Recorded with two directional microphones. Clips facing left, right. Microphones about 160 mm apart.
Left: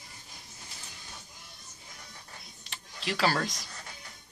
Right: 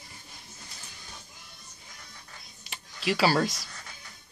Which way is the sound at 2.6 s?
10° right (ahead or behind).